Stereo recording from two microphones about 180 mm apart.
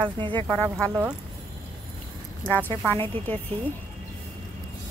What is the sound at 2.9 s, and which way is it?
Speech, 10° left (ahead or behind).